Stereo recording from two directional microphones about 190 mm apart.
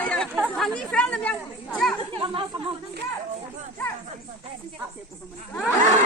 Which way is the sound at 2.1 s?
25° right (ahead or behind).